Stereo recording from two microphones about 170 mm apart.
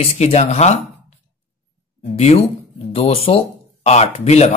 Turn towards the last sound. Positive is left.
turn(degrees=40)  # may be behind; listen again after turning